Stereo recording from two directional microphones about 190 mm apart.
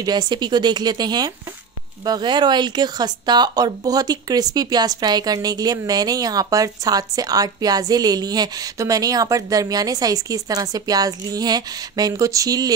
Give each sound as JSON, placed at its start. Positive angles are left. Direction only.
{"t": 0.0, "sound": "speech", "side_deg": -20}